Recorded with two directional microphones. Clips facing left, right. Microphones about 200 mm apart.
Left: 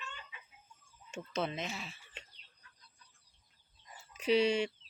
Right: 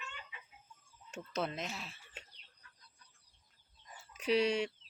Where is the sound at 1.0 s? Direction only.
Centre (ahead or behind).